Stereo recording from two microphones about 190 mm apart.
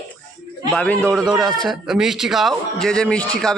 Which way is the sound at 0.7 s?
5° left (ahead or behind).